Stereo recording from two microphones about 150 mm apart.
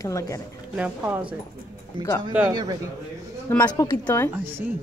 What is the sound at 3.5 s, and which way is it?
Speech, 15° left (ahead or behind).